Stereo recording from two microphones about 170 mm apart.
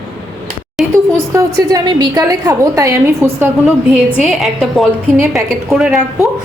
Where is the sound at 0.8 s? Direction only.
Centre (ahead or behind).